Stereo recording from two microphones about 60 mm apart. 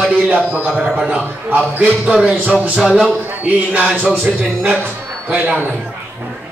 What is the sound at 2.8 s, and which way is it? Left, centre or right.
Speech, centre.